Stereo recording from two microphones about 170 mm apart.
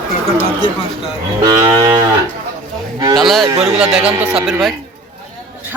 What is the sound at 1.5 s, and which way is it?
Cattle, 20° right (ahead or behind).